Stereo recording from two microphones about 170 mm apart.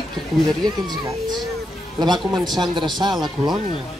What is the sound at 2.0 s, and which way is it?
A man's voice, 25° right (ahead or behind).